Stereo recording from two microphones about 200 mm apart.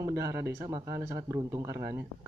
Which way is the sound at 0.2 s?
15° right (ahead or behind).